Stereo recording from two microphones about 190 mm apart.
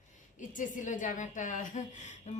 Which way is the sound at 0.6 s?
40° left (ahead or behind).